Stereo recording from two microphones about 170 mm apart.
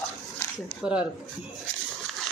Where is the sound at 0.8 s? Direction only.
5° right (ahead or behind).